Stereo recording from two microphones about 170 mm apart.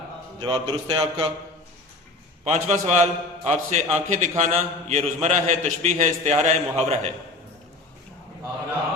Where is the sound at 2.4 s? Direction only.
40° right (ahead or behind).